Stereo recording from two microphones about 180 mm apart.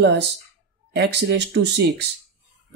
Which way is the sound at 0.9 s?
70° right (ahead or behind).